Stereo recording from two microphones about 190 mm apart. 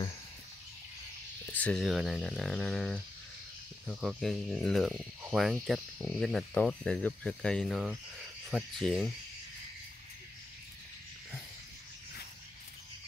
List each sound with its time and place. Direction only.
1.5 s speech: 5° left (ahead or behind)